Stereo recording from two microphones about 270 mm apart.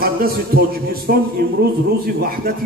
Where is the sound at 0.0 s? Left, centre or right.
Right.